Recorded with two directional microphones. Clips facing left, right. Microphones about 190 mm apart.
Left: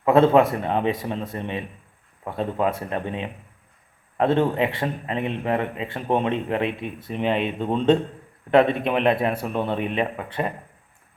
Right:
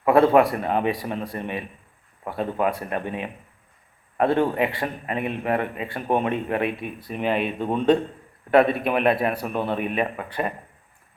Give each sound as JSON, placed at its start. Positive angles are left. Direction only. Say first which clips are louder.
{"t": 0.0, "sound": "a man's voice", "louder": "even", "side_deg": 25}
{"t": 2.6, "sound": "a man's voice", "louder": "even", "side_deg": 25}
{"t": 7.6, "sound": "a man's voice", "louder": "left 1 dB", "side_deg": -10}
{"t": 8.4, "sound": "a man's voice", "louder": "even", "side_deg": 25}
{"t": 9.5, "sound": "speech", "louder": "left 1 dB", "side_deg": -5}
{"t": 9.7, "sound": "a man's voice", "louder": "even", "side_deg": 25}